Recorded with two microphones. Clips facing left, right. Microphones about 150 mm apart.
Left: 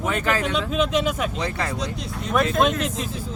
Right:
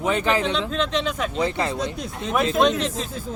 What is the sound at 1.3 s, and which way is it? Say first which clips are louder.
Speech: right 4 dB; 25° right (ahead or behind).